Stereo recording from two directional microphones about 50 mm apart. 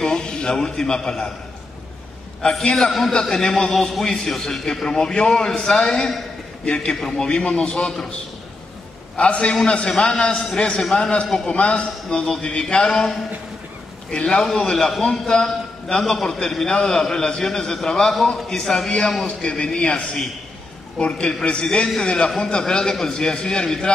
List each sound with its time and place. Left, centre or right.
0.0 s a man's voice: centre
2.6 s a man's voice: centre
9.1 s a man's voice: left
11.5 s a man's voice: left
14.1 s a man's voice: centre